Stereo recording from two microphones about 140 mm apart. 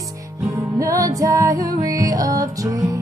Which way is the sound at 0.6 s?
25° right (ahead or behind).